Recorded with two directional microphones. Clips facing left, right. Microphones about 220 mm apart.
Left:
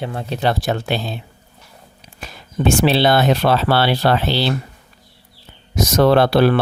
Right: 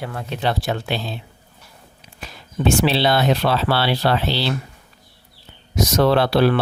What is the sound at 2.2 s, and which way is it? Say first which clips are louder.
Speech: left 2 dB; 50° left (ahead or behind).